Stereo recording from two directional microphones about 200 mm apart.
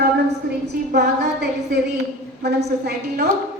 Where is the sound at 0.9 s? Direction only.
55° right (ahead or behind).